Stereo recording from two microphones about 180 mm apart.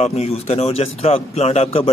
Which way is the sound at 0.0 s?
35° left (ahead or behind).